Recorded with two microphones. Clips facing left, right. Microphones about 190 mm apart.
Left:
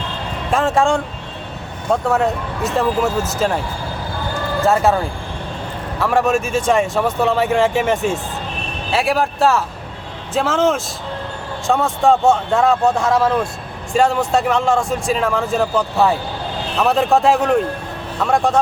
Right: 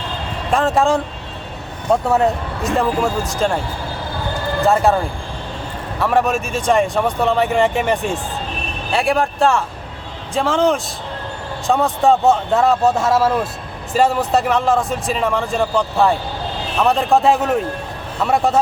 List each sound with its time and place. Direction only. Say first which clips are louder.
0.5 s speech: even; centre (ahead or behind)
4.6 s speech: even; centre (ahead or behind)
6.0 s speech: left 1 dB; centre (ahead or behind)